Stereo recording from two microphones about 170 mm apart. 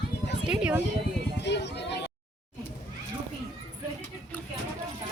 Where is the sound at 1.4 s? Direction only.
90° left.